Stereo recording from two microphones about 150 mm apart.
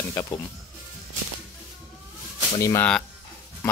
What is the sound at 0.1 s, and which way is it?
Speech, 25° left (ahead or behind).